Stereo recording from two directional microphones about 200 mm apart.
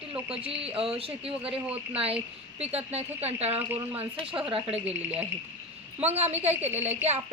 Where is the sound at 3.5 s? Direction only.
10° right (ahead or behind).